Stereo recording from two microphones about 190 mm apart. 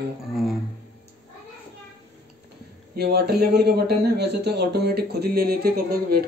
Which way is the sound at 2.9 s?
60° right (ahead or behind).